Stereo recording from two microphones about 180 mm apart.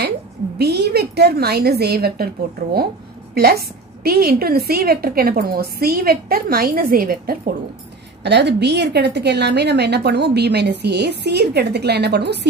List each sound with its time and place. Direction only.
0.6 s a woman's voice: 65° right (ahead or behind)
3.3 s a woman's voice: 60° right (ahead or behind)
8.2 s a woman's voice: 70° right (ahead or behind)